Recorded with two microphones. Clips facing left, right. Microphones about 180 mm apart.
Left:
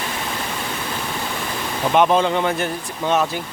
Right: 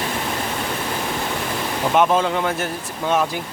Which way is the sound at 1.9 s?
5° right (ahead or behind).